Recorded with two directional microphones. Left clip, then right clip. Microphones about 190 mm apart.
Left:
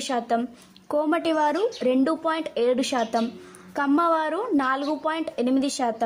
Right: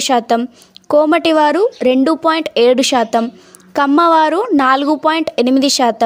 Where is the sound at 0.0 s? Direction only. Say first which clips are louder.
Right 11 dB; 45° right (ahead or behind).